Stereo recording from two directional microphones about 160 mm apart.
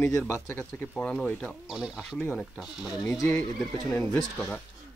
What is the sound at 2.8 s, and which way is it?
Speech, centre (ahead or behind).